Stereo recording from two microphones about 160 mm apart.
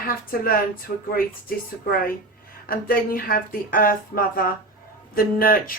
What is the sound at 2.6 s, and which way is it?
Speech, 65° left (ahead or behind).